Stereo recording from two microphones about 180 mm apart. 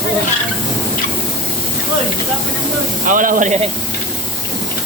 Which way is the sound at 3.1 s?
50° right (ahead or behind).